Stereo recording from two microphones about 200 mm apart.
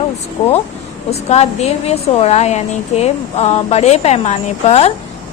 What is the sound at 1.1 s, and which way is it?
A woman's voice, 35° left (ahead or behind).